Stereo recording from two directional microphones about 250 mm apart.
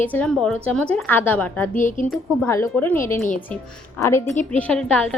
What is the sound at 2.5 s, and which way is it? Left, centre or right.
A woman's voice, centre.